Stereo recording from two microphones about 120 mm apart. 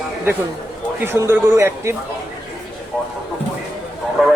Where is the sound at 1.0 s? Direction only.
20° right (ahead or behind).